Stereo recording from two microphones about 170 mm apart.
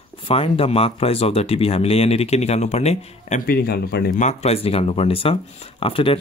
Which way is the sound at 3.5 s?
65° left (ahead or behind).